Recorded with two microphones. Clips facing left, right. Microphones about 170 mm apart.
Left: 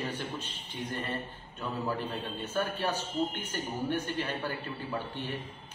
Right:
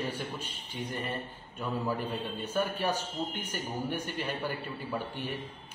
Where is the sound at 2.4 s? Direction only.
10° right (ahead or behind).